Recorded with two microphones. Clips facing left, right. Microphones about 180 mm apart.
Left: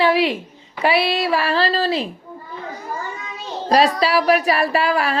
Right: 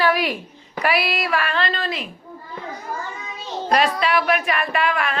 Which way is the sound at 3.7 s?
35° left (ahead or behind).